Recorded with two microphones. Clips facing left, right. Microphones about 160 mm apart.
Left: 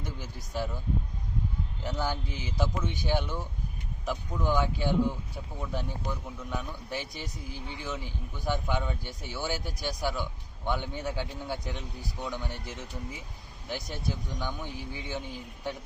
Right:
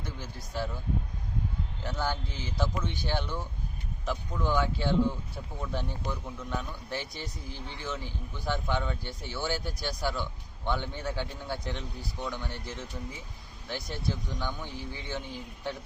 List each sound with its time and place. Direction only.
0.0 s speech: 15° left (ahead or behind)
1.8 s speech: 15° left (ahead or behind)